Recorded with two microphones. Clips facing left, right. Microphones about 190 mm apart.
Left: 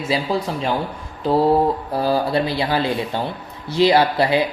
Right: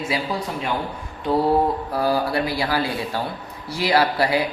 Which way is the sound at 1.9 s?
25° left (ahead or behind).